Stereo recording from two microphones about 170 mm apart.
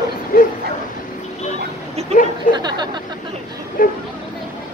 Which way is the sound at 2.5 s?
25° right (ahead or behind).